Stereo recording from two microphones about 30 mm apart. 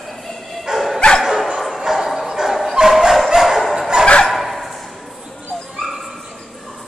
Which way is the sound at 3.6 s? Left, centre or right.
Centre.